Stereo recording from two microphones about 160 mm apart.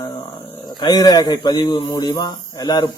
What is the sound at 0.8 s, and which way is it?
A man's voice, 25° left (ahead or behind).